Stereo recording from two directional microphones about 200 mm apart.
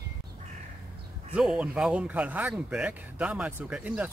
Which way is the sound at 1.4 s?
5° right (ahead or behind).